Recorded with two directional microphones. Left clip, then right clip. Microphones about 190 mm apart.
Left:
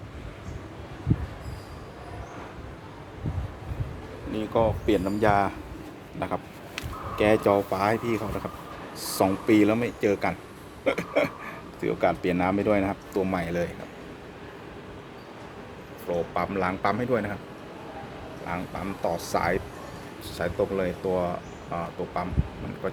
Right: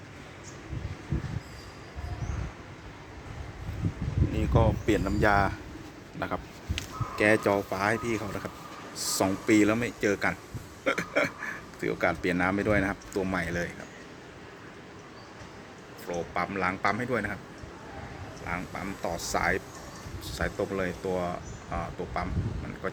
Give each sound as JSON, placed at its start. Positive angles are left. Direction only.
{"t": 4.5, "sound": "speech", "side_deg": 0}
{"t": 16.0, "sound": "speech", "side_deg": 10}
{"t": 18.4, "sound": "speech", "side_deg": 5}